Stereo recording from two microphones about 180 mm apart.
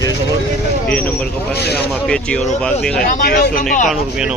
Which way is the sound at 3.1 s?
50° left (ahead or behind).